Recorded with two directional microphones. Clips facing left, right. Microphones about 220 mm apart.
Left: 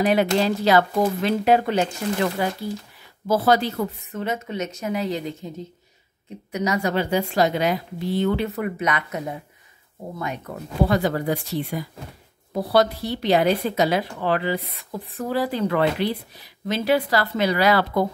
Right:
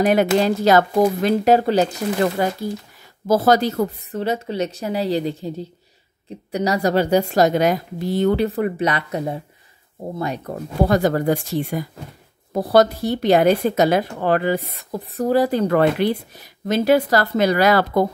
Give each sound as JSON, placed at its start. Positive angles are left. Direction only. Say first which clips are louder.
{"t": 0.0, "sound": "a woman's voice", "louder": "right 3 dB", "side_deg": -45}